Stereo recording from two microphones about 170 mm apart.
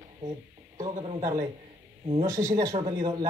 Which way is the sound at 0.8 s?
40° right (ahead or behind).